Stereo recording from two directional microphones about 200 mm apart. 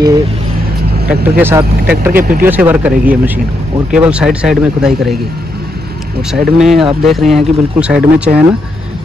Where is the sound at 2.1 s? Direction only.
45° right (ahead or behind).